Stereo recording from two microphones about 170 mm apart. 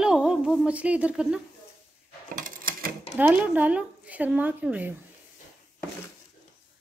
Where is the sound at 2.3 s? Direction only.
55° right (ahead or behind).